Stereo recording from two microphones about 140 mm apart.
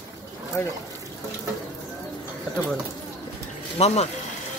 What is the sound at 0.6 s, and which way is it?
Speech, 15° left (ahead or behind).